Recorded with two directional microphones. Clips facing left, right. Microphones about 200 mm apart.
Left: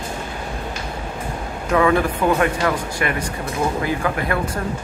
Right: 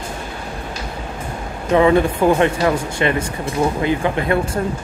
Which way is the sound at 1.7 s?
25° right (ahead or behind).